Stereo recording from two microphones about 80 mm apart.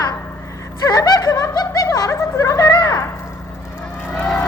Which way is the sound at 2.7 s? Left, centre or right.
Left.